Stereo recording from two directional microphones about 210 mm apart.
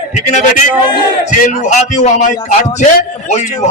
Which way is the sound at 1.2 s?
35° left (ahead or behind).